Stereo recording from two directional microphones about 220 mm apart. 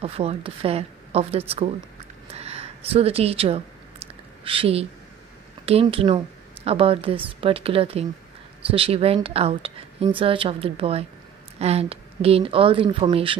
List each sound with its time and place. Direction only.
0.0 s speech: 25° right (ahead or behind)
2.3 s a sound: 30° right (ahead or behind)
4.5 s speech: 25° right (ahead or behind)